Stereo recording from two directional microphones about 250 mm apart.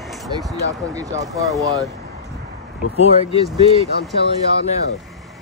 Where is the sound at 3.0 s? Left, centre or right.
Left.